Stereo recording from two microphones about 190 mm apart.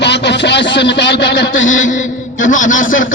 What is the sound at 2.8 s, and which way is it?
Speech, 90° left.